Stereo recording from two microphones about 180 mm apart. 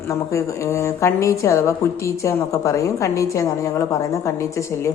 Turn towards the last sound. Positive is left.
turn(degrees=15)  # may be behind; listen again after turning